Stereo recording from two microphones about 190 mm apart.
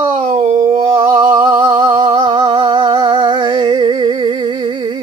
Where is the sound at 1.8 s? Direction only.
30° right (ahead or behind).